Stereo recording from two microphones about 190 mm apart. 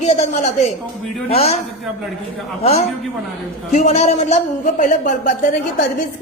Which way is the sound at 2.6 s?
35° left (ahead or behind).